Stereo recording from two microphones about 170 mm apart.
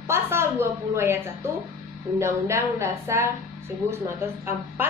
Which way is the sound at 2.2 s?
15° right (ahead or behind).